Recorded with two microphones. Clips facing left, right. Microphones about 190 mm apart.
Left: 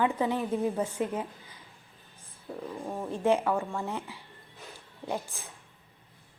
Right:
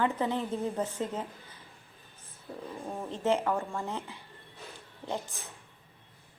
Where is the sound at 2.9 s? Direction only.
10° left (ahead or behind).